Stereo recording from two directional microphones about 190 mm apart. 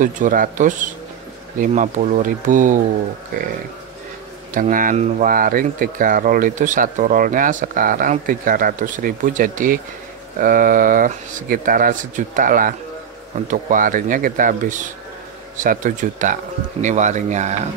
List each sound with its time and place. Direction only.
0.0 s speech: 45° right (ahead or behind)
4.6 s speech: 45° right (ahead or behind)